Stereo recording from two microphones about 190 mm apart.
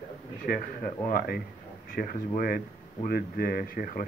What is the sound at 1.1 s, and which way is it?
Speech, 55° left (ahead or behind).